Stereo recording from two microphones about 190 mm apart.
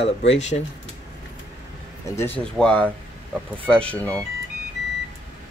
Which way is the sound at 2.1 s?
10° left (ahead or behind).